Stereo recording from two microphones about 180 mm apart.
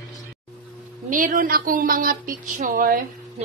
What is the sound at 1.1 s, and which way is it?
Speech, 50° right (ahead or behind).